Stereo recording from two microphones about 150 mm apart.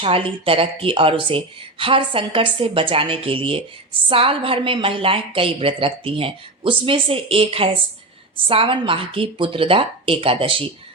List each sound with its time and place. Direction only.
0.0 s a woman's voice: 35° right (ahead or behind)